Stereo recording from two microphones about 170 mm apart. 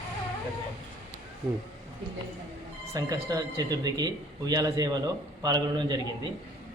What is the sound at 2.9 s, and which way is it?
Speech, 20° right (ahead or behind).